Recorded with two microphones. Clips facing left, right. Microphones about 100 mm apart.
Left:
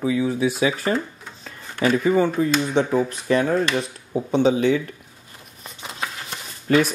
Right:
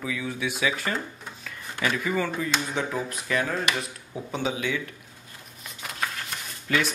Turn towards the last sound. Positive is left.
turn(degrees=40)  # may be behind; listen again after turning